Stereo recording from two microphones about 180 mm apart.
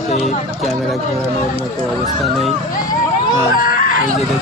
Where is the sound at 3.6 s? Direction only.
50° left (ahead or behind).